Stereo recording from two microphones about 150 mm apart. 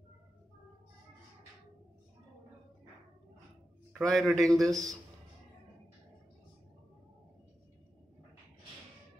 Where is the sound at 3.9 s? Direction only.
Centre (ahead or behind).